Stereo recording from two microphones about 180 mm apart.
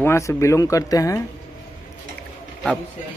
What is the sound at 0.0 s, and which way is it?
Speech, 15° left (ahead or behind).